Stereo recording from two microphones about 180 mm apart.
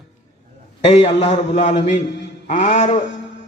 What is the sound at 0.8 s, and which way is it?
A man's voice, 35° left (ahead or behind).